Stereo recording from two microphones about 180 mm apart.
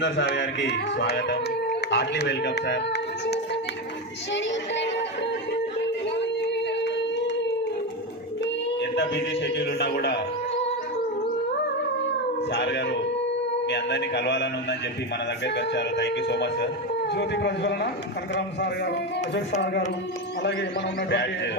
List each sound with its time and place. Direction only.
0.0 s speech: 80° left
4.3 s music: 80° left
6.1 s a sound: 75° left (ahead or behind)
8.8 s speech: 70° left (ahead or behind)
12.5 s speech: 70° left (ahead or behind)
20.4 s speech: 85° left